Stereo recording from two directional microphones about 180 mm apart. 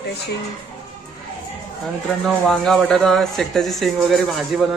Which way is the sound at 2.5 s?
Centre (ahead or behind).